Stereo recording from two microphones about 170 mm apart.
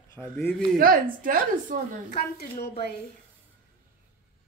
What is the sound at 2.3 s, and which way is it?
Speech, 70° left (ahead or behind).